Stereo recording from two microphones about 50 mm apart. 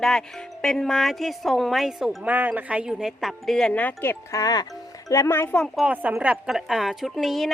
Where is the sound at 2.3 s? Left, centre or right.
Right.